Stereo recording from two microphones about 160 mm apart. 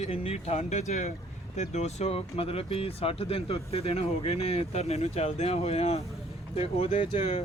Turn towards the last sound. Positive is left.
turn(degrees=45)  # may be behind; listen again after turning